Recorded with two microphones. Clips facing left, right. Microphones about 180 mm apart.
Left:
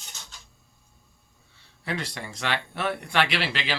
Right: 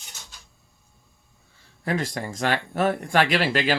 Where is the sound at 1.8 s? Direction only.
45° right (ahead or behind).